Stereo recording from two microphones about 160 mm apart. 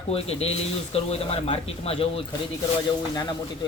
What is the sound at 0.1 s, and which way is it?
Speech, 40° left (ahead or behind).